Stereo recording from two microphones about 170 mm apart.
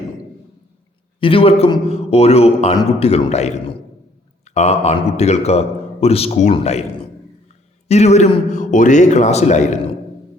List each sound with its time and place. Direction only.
1.2 s a man's voice: 30° left (ahead or behind)